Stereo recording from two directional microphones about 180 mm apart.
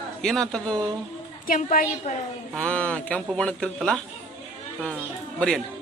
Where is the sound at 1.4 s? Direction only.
50° left (ahead or behind).